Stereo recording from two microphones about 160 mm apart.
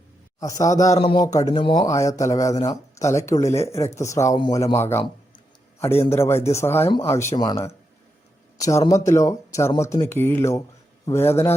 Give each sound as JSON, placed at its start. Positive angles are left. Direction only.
{"t": 0.3, "sound": "a man's voice", "side_deg": 20}
{"t": 0.9, "sound": "speech", "side_deg": 30}
{"t": 6.1, "sound": "a man's voice", "side_deg": 15}